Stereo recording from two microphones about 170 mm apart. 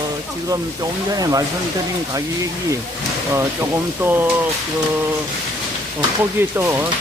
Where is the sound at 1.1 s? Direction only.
20° right (ahead or behind).